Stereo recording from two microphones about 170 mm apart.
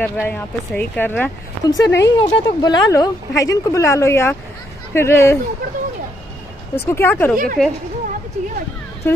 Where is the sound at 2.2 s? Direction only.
25° left (ahead or behind).